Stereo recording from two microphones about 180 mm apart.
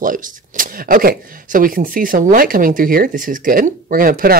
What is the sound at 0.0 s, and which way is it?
Speech, 50° right (ahead or behind).